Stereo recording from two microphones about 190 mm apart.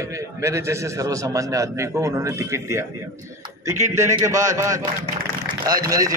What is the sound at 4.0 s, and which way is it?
Speech, 15° right (ahead or behind).